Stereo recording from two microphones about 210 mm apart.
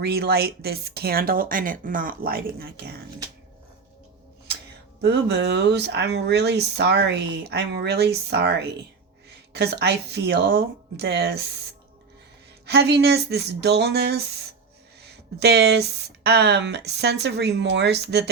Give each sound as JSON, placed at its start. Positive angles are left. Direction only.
{"t": 0.0, "sound": "speech", "side_deg": -50}
{"t": 4.9, "sound": "speech", "side_deg": -50}